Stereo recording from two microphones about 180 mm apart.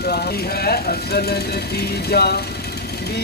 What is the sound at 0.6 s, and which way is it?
Speech, 60° left (ahead or behind).